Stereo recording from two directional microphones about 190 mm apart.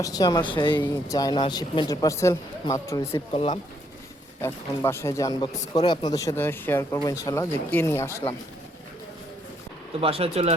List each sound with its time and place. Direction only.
0.0 s speech: 20° left (ahead or behind)
3.3 s speech: 25° left (ahead or behind)
4.4 s speech: 15° left (ahead or behind)
10.0 s speech: 30° right (ahead or behind)